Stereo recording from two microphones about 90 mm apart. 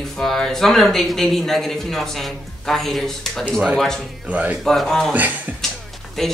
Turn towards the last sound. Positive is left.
turn(degrees=0)  # may be behind; listen again after turning